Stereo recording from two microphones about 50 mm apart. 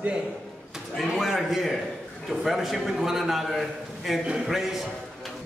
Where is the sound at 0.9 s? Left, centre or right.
Centre.